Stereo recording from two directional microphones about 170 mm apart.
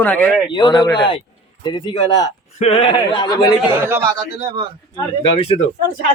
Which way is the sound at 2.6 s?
35° left (ahead or behind).